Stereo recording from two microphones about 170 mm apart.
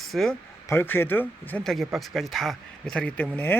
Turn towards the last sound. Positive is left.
turn(degrees=10)  # may be behind; listen again after turning